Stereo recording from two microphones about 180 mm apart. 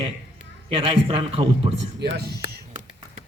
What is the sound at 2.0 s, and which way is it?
Speech, 65° right (ahead or behind).